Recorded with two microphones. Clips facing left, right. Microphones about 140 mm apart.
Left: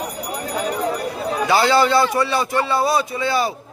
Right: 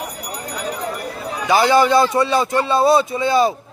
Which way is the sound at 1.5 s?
15° right (ahead or behind).